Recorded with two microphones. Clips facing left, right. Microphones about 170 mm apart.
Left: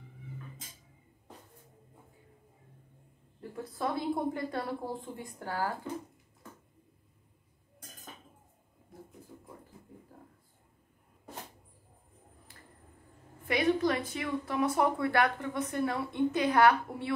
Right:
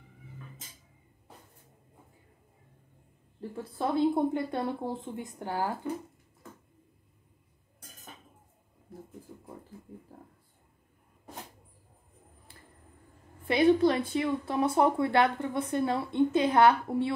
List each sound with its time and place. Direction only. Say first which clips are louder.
3.3 s speech: right 3 dB; 25° right (ahead or behind)
12.5 s a sound: right 2 dB; 30° right (ahead or behind)
13.5 s speech: right 5 dB; 30° right (ahead or behind)